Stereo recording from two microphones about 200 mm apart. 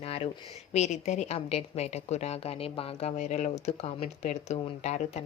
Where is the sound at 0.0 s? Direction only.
30° left (ahead or behind).